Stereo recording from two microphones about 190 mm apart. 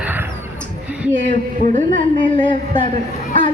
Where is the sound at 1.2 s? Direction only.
40° right (ahead or behind).